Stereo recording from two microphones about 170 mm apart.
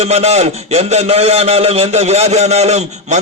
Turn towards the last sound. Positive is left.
turn(degrees=-40)  # may be behind; listen again after turning